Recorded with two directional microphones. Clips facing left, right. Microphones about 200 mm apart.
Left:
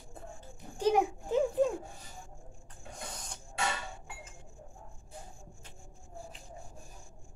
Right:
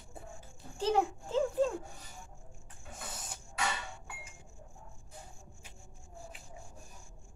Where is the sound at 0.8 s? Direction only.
15° left (ahead or behind).